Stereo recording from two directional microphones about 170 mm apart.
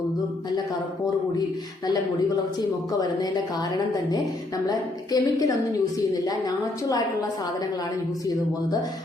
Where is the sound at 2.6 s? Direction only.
20° left (ahead or behind).